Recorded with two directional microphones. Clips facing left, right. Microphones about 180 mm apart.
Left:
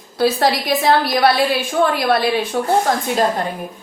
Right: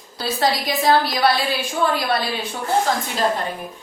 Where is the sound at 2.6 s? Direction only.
50° left (ahead or behind).